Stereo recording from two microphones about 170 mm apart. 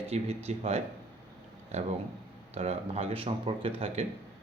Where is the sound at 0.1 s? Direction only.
40° right (ahead or behind).